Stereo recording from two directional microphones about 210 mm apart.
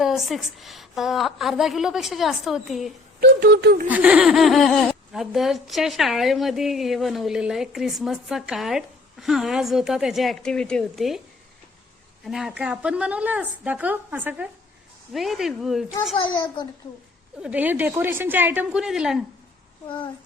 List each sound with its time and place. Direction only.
0.0 s speech: centre (ahead or behind)
3.2 s speech: 50° right (ahead or behind)
3.8 s speech: 5° right (ahead or behind)
12.2 s a woman's voice: centre (ahead or behind)
16.1 s a child's voice: 20° left (ahead or behind)
17.4 s a woman's voice: 5° right (ahead or behind)